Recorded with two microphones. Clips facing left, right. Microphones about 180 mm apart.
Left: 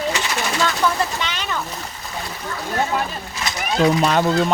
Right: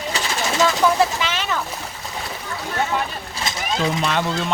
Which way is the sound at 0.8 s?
5° right (ahead or behind).